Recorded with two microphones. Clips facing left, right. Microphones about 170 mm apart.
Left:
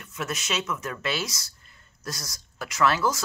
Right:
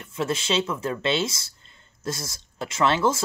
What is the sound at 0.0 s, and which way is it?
Speech, 30° right (ahead or behind).